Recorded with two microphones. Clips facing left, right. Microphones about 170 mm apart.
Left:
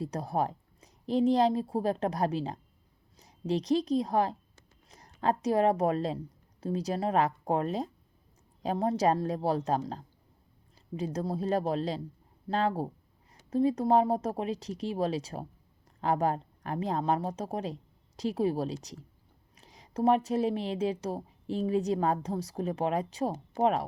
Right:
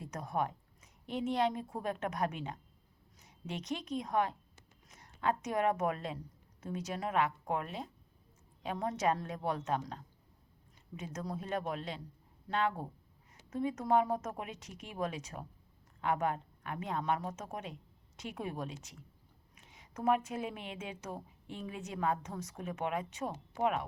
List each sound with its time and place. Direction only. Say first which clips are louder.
0.0 s a woman's voice: left 6 dB; 35° left (ahead or behind)